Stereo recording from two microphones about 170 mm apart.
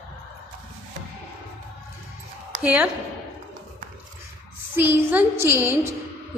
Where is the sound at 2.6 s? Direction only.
10° right (ahead or behind).